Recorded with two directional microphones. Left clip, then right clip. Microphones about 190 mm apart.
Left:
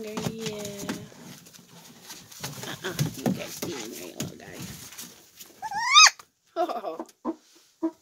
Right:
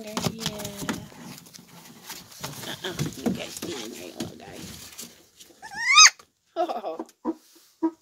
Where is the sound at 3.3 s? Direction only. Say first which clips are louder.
Right 1 dB; 5° right (ahead or behind).